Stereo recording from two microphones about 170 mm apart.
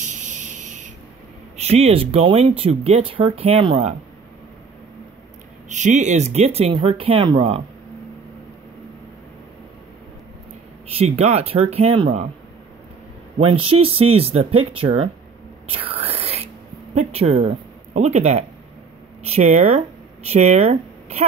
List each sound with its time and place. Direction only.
0.1 s a sound: 45° right (ahead or behind)
1.6 s speech: 35° right (ahead or behind)
5.7 s speech: 45° right (ahead or behind)
10.9 s speech: 35° right (ahead or behind)
13.4 s speech: 35° right (ahead or behind)
15.7 s whispering: 35° right (ahead or behind)
16.9 s speech: 40° right (ahead or behind)